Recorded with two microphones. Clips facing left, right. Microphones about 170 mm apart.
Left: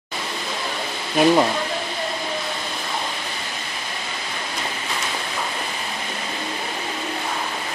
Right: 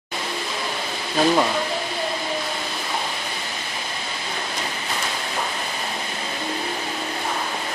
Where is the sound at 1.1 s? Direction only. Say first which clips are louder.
Left 3 dB; 15° left (ahead or behind).